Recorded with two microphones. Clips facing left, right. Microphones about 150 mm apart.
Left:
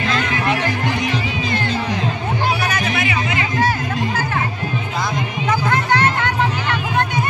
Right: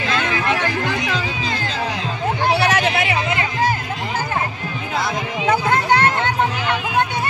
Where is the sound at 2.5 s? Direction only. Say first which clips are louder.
Right 3 dB; 75° right (ahead or behind).